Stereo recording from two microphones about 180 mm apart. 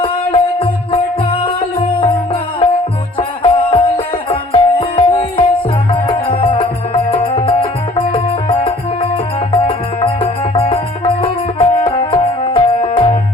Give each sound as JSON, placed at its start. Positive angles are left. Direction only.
{"t": 0.0, "sound": "music", "side_deg": 30}